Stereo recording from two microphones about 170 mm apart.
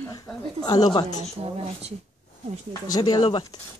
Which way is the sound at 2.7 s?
20° left (ahead or behind).